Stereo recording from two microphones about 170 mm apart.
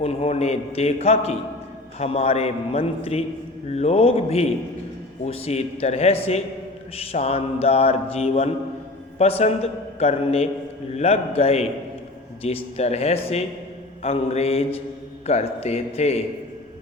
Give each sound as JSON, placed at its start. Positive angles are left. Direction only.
{"t": 0.0, "sound": "mantra", "side_deg": 35}